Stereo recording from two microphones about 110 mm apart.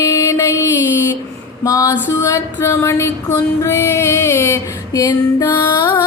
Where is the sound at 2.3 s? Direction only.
25° left (ahead or behind).